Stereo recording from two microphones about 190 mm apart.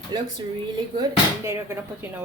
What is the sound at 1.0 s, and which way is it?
Speech, 15° right (ahead or behind).